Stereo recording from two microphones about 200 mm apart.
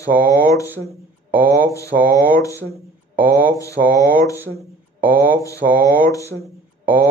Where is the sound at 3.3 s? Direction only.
15° left (ahead or behind).